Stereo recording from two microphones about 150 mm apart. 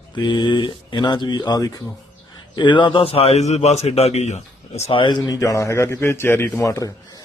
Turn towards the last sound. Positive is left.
turn(degrees=20)  # may be behind; listen again after turning